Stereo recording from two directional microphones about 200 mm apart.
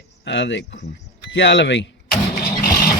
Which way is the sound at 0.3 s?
60° left (ahead or behind).